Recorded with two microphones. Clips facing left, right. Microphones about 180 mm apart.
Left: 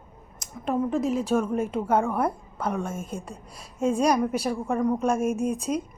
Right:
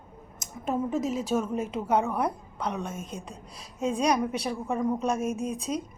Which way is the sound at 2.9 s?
50° left (ahead or behind).